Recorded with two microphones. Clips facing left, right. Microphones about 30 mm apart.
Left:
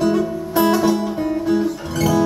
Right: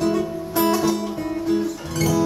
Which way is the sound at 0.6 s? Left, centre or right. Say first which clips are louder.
Left 4 dB; left.